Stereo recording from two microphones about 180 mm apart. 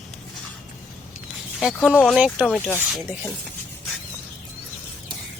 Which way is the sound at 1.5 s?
5° right (ahead or behind).